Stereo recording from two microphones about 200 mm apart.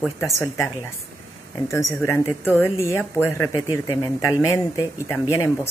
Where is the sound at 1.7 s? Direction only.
15° left (ahead or behind).